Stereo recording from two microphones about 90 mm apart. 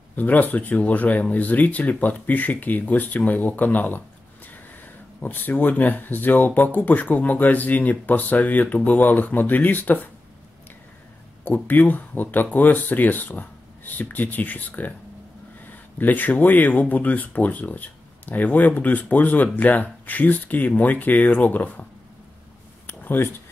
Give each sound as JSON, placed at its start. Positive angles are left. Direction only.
{"t": 0.1, "sound": "speech", "side_deg": 20}
{"t": 5.2, "sound": "speech", "side_deg": 20}
{"t": 11.4, "sound": "speech", "side_deg": 20}
{"t": 16.0, "sound": "speech", "side_deg": 20}
{"t": 22.8, "sound": "a sound", "side_deg": 25}